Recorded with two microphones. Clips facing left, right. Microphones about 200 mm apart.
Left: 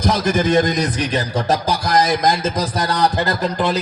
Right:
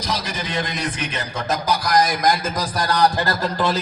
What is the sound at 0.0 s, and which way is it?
A man's voice, 50° left (ahead or behind).